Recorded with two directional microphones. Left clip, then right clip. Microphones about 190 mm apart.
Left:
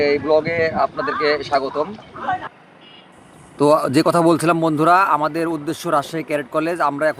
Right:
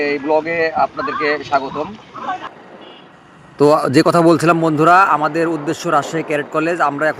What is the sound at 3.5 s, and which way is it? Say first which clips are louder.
A man's voice: right 3 dB; 15° right (ahead or behind).